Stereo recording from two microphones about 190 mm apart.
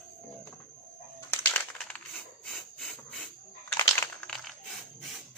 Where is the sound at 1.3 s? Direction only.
10° left (ahead or behind).